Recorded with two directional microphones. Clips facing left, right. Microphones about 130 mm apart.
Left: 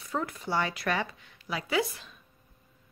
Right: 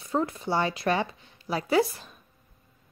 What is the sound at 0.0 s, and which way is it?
Speech, 25° right (ahead or behind).